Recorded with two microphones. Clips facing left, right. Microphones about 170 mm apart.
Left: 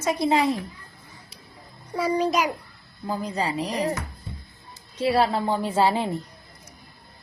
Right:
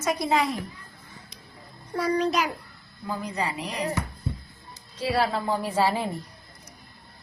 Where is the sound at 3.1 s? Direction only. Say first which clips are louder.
Left 3 dB; 35° left (ahead or behind).